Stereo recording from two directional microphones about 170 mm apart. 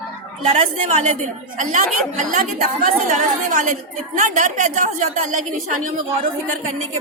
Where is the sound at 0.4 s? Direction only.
40° right (ahead or behind).